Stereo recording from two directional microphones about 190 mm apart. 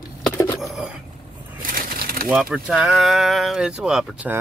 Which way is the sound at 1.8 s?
50° right (ahead or behind).